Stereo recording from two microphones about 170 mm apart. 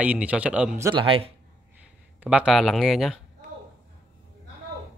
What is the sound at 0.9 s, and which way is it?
Speech, 30° right (ahead or behind).